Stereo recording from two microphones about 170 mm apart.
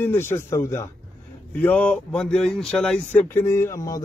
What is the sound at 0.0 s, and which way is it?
Speech, 15° left (ahead or behind).